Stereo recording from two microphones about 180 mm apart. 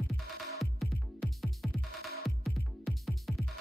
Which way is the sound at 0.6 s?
Centre (ahead or behind).